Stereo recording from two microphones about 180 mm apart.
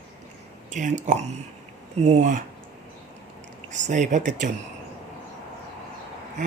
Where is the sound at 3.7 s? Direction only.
40° right (ahead or behind).